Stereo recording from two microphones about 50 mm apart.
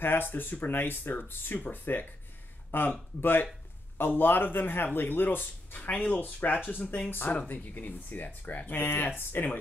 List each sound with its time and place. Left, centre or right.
0.0 s speech: left